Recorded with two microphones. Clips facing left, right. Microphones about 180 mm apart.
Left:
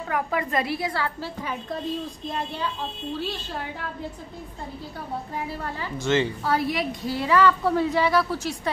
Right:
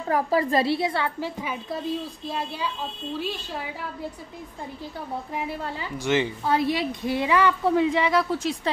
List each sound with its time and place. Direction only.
0.1 s a woman's voice: 35° right (ahead or behind)
1.4 s speech: 5° right (ahead or behind)
5.3 s a woman's voice: 15° right (ahead or behind)